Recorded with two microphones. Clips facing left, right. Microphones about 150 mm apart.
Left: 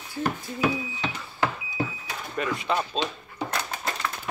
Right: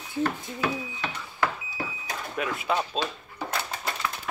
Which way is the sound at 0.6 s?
15° left (ahead or behind).